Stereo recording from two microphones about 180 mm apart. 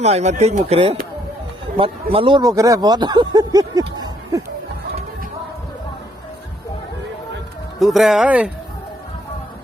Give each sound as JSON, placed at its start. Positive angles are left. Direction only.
{"t": 0.0, "sound": "speech", "side_deg": -40}
{"t": 7.8, "sound": "speech", "side_deg": 0}